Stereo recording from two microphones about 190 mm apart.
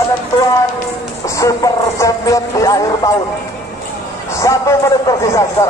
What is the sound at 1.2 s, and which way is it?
Music, 15° left (ahead or behind).